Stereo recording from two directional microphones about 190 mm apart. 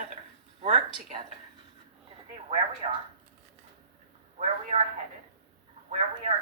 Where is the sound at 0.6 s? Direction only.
30° right (ahead or behind).